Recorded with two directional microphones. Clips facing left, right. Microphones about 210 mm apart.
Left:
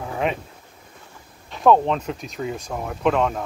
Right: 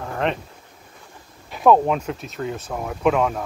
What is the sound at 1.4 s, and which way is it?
Speech, 5° right (ahead or behind).